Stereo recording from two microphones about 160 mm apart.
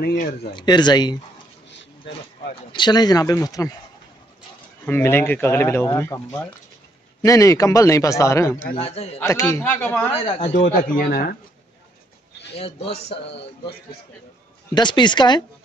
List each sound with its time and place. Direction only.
0.0 s speech: 60° left (ahead or behind)
0.5 s speech: 30° left (ahead or behind)
2.7 s speech: 25° left (ahead or behind)
4.8 s speech: 15° left (ahead or behind)
8.7 s a man's voice: 40° left (ahead or behind)
9.2 s speech: 15° left (ahead or behind)
10.5 s speech: 55° left (ahead or behind)
12.5 s a man's voice: 35° left (ahead or behind)